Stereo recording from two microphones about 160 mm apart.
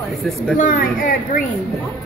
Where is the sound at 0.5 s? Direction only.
55° left (ahead or behind).